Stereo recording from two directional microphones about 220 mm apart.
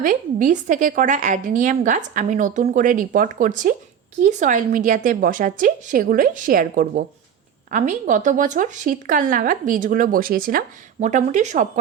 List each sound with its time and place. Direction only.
0.0 s a woman's voice: 35° right (ahead or behind)